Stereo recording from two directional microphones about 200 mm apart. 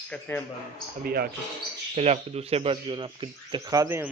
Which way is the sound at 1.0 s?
50° right (ahead or behind).